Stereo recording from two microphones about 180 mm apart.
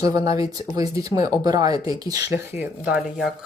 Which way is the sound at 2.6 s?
5° right (ahead or behind).